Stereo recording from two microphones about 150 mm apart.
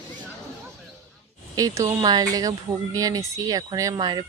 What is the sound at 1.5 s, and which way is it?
Speech, 25° right (ahead or behind).